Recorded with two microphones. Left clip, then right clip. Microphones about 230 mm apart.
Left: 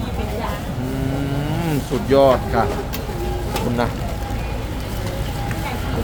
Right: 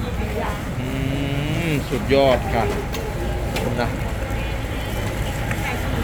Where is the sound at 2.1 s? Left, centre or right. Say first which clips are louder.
Left 3 dB; left.